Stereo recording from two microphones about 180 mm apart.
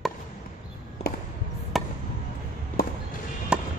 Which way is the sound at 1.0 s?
35° left (ahead or behind).